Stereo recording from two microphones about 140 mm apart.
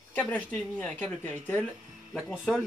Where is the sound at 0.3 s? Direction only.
10° left (ahead or behind).